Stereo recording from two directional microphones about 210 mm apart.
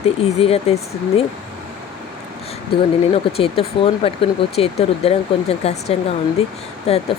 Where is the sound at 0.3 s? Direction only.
30° left (ahead or behind).